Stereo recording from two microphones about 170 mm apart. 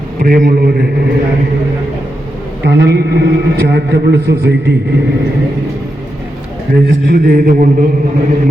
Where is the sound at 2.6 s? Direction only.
80° right.